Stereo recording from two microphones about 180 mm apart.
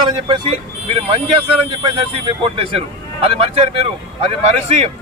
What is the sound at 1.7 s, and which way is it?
Speech, 25° right (ahead or behind).